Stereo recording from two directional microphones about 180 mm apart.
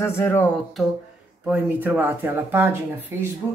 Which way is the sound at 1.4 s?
10° right (ahead or behind).